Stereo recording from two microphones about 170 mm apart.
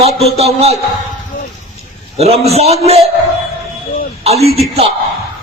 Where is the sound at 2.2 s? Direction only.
40° right (ahead or behind).